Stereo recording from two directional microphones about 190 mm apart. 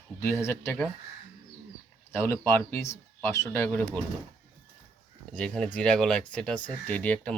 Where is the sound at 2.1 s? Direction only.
10° left (ahead or behind).